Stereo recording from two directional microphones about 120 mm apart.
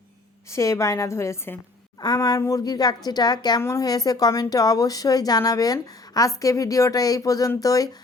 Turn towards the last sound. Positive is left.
turn(degrees=30)  # may be behind; listen again after turning